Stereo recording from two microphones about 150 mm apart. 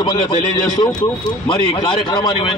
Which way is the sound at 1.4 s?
30° left (ahead or behind).